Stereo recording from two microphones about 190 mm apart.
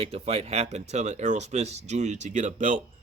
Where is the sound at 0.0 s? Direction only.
30° right (ahead or behind).